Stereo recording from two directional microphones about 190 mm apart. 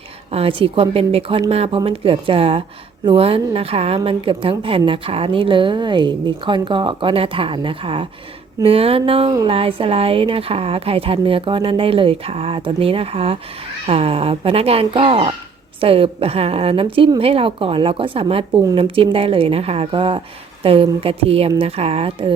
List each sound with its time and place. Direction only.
0.3 s a woman's voice: 30° right (ahead or behind)